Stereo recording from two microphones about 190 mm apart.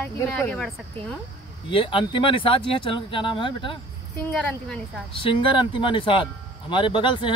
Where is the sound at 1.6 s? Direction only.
25° left (ahead or behind).